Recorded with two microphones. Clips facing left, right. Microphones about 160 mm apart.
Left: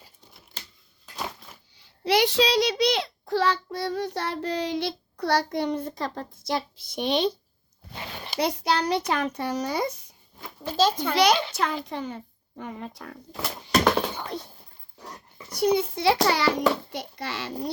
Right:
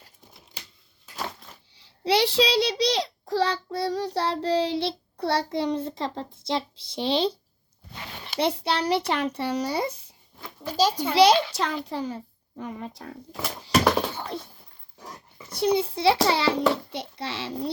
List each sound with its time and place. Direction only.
1.8 s a child's voice: 30° right (ahead or behind)
8.4 s a child's voice: 30° right (ahead or behind)
10.7 s a child's voice: 10° right (ahead or behind)
11.1 s a child's voice: 30° right (ahead or behind)
13.3 s a sound: centre (ahead or behind)
15.4 s a child's voice: 30° right (ahead or behind)